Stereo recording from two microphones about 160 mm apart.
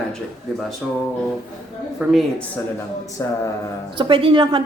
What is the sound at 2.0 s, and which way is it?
Speech, 5° right (ahead or behind).